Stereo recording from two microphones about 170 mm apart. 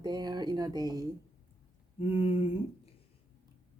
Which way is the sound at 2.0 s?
35° left (ahead or behind).